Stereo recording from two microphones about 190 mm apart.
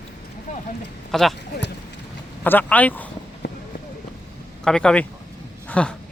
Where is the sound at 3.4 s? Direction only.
60° left (ahead or behind).